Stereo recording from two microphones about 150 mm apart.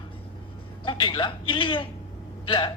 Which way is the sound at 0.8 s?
30° left (ahead or behind).